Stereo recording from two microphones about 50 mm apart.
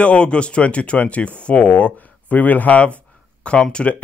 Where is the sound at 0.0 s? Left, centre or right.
Left.